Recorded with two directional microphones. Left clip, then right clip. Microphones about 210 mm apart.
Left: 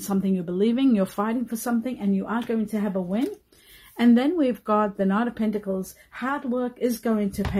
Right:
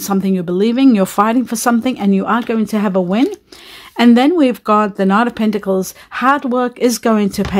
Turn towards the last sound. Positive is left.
turn(degrees=-45)  # may be behind; listen again after turning